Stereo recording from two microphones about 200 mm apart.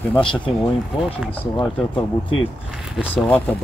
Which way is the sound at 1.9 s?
25° left (ahead or behind).